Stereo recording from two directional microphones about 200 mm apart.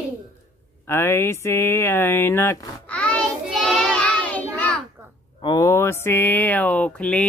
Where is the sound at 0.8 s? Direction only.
10° left (ahead or behind).